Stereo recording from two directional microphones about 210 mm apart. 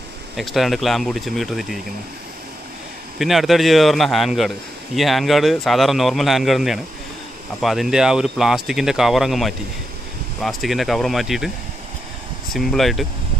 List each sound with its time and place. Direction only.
0.4 s speech: centre (ahead or behind)
3.2 s speech: centre (ahead or behind)
12.5 s speech: centre (ahead or behind)